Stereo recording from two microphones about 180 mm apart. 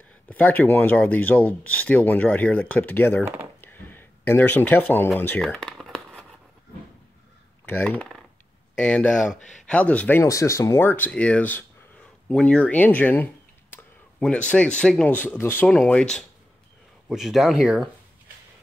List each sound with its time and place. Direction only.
0.3 s speech: 10° left (ahead or behind)
3.6 s a sound: 10° left (ahead or behind)
7.6 s speech: 10° left (ahead or behind)
9.4 s speech: 45° left (ahead or behind)
9.7 s speech: 5° left (ahead or behind)